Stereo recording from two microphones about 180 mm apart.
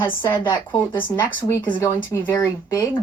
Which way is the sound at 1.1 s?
15° left (ahead or behind).